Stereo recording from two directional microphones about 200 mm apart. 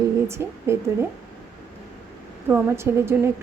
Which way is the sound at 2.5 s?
10° right (ahead or behind).